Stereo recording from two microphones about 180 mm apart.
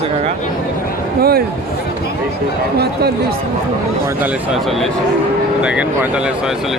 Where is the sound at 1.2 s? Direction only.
60° right (ahead or behind).